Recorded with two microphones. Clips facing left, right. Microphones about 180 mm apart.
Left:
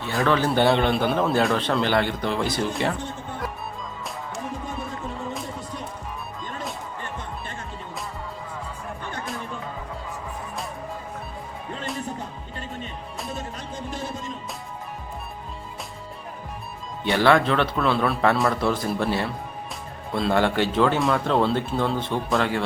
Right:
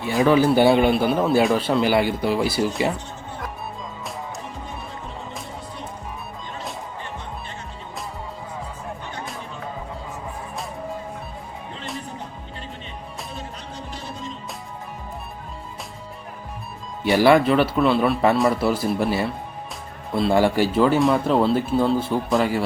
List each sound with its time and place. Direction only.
0.0 s speech: 15° right (ahead or behind)
13.3 s music: 50° left (ahead or behind)
17.0 s a man's voice: 10° right (ahead or behind)